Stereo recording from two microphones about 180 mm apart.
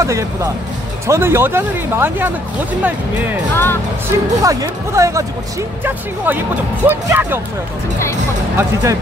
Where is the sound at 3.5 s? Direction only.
10° left (ahead or behind).